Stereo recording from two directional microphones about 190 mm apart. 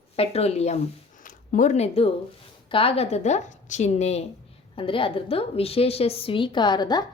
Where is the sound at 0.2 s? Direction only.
35° left (ahead or behind).